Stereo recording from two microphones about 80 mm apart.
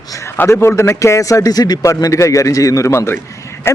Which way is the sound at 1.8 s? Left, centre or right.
Left.